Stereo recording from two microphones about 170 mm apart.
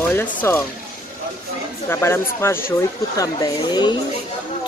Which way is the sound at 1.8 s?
15° left (ahead or behind).